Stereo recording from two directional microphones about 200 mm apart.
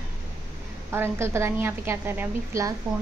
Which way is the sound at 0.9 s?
10° right (ahead or behind).